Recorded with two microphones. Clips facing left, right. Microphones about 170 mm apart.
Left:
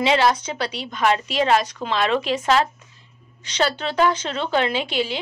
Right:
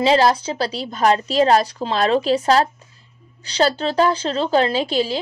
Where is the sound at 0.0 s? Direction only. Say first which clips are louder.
Right 3 dB; 35° right (ahead or behind).